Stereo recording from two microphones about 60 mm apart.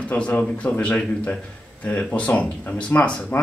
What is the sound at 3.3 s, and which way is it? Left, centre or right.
Speech, left.